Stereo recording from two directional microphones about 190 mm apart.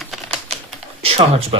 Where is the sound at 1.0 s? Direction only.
30° right (ahead or behind).